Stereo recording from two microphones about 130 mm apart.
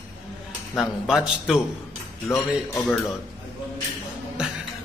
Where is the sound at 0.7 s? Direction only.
5° right (ahead or behind).